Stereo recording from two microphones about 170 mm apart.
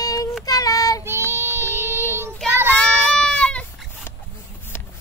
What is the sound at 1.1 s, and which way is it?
Child singing, 15° right (ahead or behind).